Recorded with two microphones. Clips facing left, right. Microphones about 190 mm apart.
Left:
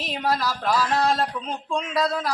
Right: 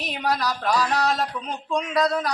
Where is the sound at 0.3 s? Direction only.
Centre (ahead or behind).